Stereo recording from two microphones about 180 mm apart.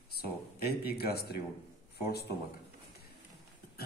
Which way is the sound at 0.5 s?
60° left (ahead or behind).